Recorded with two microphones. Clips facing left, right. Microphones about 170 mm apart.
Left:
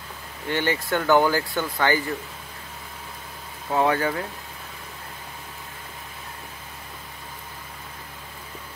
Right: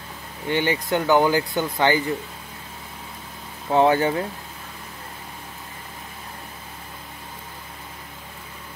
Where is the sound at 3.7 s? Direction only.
30° right (ahead or behind).